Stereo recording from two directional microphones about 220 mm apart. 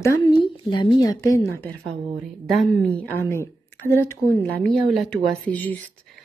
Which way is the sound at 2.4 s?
Centre (ahead or behind).